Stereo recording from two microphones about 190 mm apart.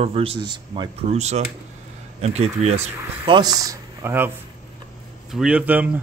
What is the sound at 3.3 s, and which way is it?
Speech, 20° right (ahead or behind).